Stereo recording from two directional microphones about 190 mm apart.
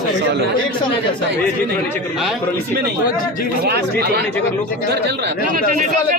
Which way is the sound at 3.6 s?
55° right (ahead or behind).